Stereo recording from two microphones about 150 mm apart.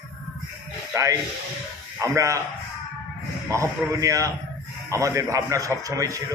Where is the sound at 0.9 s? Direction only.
20° right (ahead or behind).